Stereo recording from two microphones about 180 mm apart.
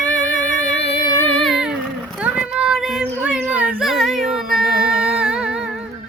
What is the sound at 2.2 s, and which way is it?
Child singing, 5° right (ahead or behind).